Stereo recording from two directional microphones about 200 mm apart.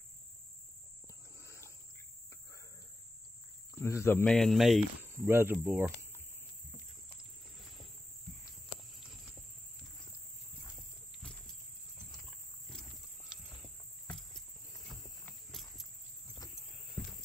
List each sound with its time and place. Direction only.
1.0 s cricket: 15° left (ahead or behind)
3.7 s speech: 15° left (ahead or behind)
4.2 s speech: centre (ahead or behind)
5.1 s speech: 15° right (ahead or behind)
7.2 s a sound: centre (ahead or behind)
8.9 s cricket: centre (ahead or behind)
12.1 s horse: centre (ahead or behind)
14.9 s a sound: centre (ahead or behind)
17.0 s a sound: centre (ahead or behind)